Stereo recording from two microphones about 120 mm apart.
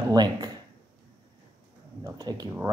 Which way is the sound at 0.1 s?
35° right (ahead or behind).